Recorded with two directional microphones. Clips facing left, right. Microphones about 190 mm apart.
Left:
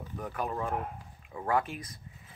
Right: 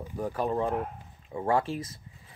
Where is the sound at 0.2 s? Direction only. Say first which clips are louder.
Right 6 dB; 30° right (ahead or behind).